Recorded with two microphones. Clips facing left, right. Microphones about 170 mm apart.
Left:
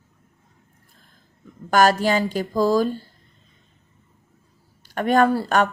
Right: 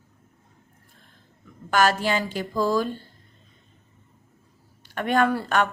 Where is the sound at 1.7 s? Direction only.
40° left (ahead or behind).